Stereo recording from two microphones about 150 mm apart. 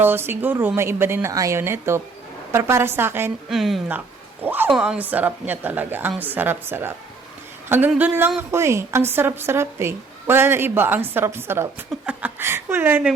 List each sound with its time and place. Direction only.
0.0 s speech: 15° right (ahead or behind)
3.5 s speech: centre (ahead or behind)
4.4 s speech: 15° right (ahead or behind)